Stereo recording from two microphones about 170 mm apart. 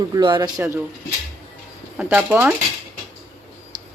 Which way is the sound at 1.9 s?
10° right (ahead or behind).